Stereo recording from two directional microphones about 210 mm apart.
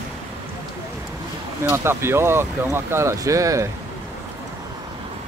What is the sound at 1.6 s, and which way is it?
Speech, 10° right (ahead or behind).